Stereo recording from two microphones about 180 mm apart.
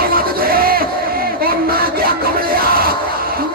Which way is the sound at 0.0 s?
55° right (ahead or behind).